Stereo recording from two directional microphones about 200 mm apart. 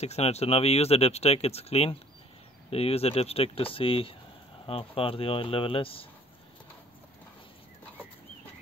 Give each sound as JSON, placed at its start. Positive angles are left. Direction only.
{"t": 0.0, "sound": "speech", "side_deg": 35}